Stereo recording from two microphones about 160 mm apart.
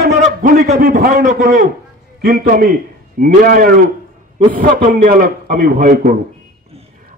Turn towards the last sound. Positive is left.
turn(degrees=-60)  # may be behind; listen again after turning